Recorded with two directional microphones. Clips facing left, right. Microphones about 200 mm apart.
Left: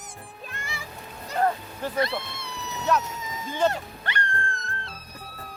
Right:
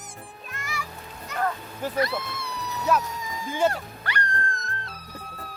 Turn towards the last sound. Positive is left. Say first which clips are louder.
# right 1 dB
turn(degrees=25)  # may be behind; listen again after turning